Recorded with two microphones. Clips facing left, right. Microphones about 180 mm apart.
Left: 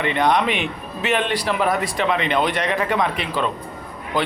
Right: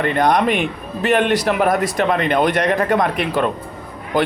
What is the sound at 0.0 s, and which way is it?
A man's voice, 45° right (ahead or behind).